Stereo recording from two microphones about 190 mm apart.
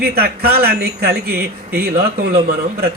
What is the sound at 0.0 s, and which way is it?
A man's voice, 55° right (ahead or behind).